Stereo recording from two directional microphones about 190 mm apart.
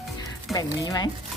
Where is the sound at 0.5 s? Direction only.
20° left (ahead or behind).